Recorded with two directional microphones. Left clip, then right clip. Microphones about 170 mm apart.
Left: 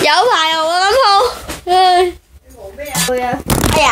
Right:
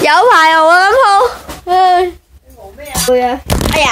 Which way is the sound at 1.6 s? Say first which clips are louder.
Right 1 dB; 10° left (ahead or behind).